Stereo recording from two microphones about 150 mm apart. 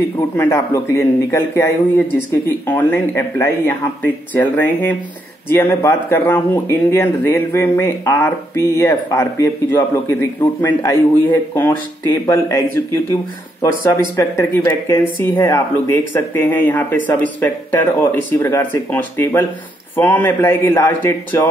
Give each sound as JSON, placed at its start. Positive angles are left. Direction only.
{"t": 0.4, "sound": "speech", "side_deg": 20}